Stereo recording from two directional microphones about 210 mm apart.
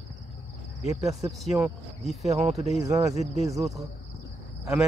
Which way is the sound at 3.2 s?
30° left (ahead or behind).